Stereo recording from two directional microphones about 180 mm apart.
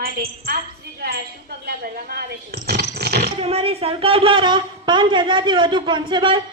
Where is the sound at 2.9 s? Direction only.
60° right (ahead or behind).